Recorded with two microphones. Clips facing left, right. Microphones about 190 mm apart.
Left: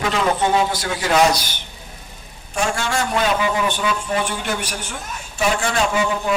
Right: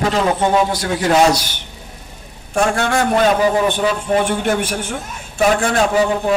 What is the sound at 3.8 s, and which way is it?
A man's voice, 50° right (ahead or behind).